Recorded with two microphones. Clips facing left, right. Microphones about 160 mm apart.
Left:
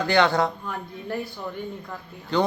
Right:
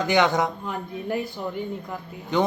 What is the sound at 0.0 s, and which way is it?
A woman's voice, 15° right (ahead or behind).